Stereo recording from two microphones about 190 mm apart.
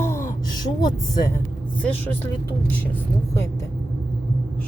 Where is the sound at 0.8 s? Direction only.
20° left (ahead or behind).